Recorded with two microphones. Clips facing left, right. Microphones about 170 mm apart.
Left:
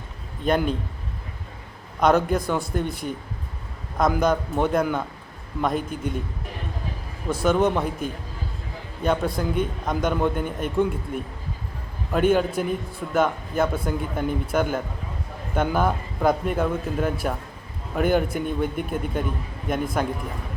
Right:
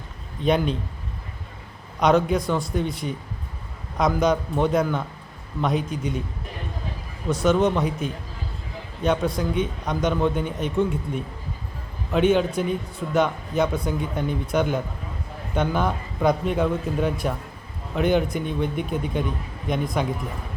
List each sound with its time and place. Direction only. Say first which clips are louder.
0.4 s a man's voice: right 1 dB; 5° left (ahead or behind)
2.0 s a man's voice: even; 5° left (ahead or behind)
5.7 s a man's voice: right 1 dB; 55° left (ahead or behind)
7.4 s a man's voice: right 1 dB; 5° left (ahead or behind)